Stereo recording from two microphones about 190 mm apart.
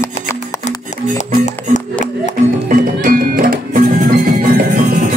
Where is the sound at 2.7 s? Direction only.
45° right (ahead or behind).